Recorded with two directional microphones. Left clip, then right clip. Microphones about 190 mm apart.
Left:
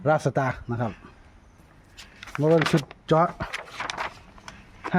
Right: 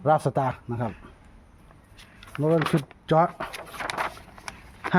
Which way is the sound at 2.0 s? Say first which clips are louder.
Left 4 dB; 40° left (ahead or behind).